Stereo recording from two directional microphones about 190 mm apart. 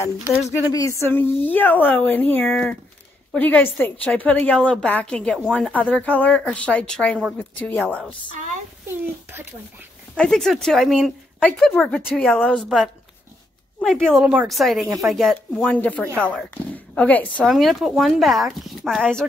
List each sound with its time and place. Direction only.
0.5 s a woman's voice: 15° left (ahead or behind)
8.8 s a child's voice: 10° right (ahead or behind)
10.1 s a woman's voice: 5° left (ahead or behind)